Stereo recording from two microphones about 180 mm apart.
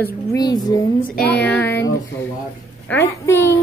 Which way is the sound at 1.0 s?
55° left (ahead or behind).